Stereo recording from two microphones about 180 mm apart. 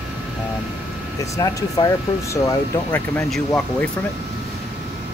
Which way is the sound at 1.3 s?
20° left (ahead or behind).